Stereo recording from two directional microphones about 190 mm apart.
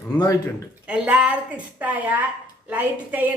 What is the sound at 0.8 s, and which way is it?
A woman's voice, 5° right (ahead or behind).